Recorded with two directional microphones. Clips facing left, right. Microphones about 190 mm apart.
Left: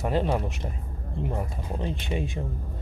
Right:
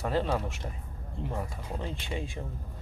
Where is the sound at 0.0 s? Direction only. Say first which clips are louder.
Left 3 dB; 20° left (ahead or behind).